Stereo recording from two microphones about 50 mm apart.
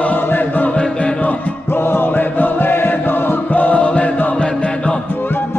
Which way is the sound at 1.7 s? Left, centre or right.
Left.